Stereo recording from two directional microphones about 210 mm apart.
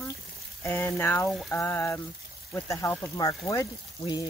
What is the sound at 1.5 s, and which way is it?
Speech, 10° left (ahead or behind).